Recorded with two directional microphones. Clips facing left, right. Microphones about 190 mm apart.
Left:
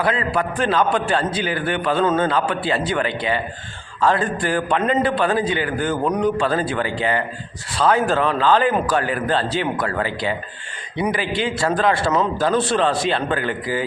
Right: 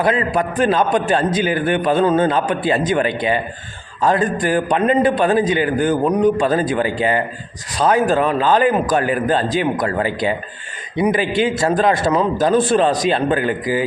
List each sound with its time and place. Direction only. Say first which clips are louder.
0.0 s a man's voice: right 3 dB; 20° right (ahead or behind)